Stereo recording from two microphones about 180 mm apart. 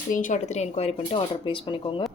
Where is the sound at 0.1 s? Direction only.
45° left (ahead or behind); by 2.0 s 30° left (ahead or behind).